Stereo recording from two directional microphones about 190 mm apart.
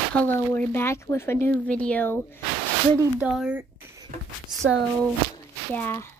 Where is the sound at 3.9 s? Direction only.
20° right (ahead or behind).